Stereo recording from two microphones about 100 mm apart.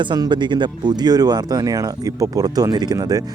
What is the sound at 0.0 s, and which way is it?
Speech, 50° right (ahead or behind).